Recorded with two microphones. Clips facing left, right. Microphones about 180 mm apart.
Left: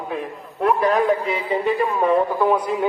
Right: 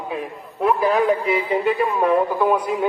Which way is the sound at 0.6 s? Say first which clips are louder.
Even; centre (ahead or behind).